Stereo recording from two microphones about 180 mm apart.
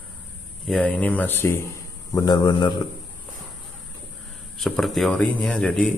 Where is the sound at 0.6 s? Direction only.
5° left (ahead or behind); by 2.8 s 25° left (ahead or behind).